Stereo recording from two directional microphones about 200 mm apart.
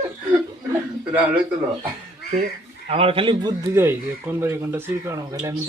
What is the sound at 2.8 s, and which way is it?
A man's voice, 30° right (ahead or behind).